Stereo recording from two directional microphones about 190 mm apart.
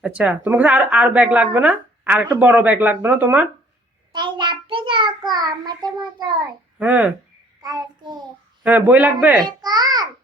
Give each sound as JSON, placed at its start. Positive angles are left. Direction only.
{"t": 0.0, "sound": "speech", "side_deg": -5}
{"t": 4.1, "sound": "child singing", "side_deg": -25}
{"t": 6.7, "sound": "speech", "side_deg": -10}
{"t": 7.6, "sound": "child singing", "side_deg": -20}
{"t": 8.6, "sound": "speech", "side_deg": -10}
{"t": 9.4, "sound": "babbling", "side_deg": -20}